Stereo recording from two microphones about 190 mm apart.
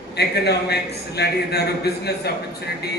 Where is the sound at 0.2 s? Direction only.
60° left (ahead or behind).